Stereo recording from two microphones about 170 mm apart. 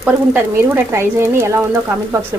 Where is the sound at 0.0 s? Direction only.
15° right (ahead or behind).